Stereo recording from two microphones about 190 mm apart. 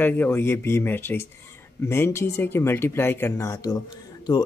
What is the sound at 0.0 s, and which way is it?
Speech, 10° left (ahead or behind).